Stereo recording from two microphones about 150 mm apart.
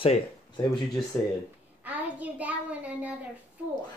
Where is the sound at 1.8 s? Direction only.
10° right (ahead or behind).